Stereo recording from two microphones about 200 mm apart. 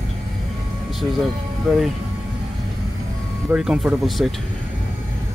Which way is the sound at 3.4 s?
5° right (ahead or behind).